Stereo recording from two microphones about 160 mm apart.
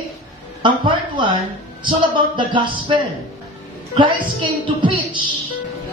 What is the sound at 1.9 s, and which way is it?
Speech, 30° right (ahead or behind).